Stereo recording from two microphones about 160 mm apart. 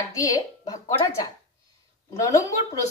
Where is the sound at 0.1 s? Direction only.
20° left (ahead or behind).